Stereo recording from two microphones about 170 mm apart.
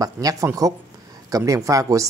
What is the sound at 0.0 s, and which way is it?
Speech, 20° right (ahead or behind).